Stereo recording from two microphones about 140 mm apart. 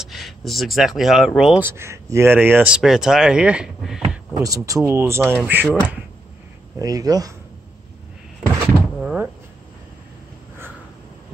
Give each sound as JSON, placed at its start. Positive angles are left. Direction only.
{"t": 0.0, "sound": "speech", "side_deg": 0}
{"t": 1.6, "sound": "speech", "side_deg": -20}
{"t": 4.3, "sound": "speech", "side_deg": -25}
{"t": 6.8, "sound": "speech", "side_deg": -25}
{"t": 9.0, "sound": "speech", "side_deg": -5}